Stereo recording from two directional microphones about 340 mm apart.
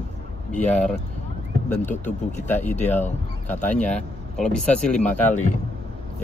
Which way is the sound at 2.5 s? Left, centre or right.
Centre.